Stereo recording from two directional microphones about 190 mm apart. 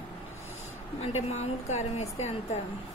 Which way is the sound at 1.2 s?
35° left (ahead or behind).